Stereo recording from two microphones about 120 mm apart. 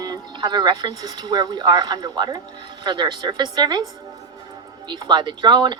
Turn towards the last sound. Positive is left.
turn(degrees=-40)  # may be behind; listen again after turning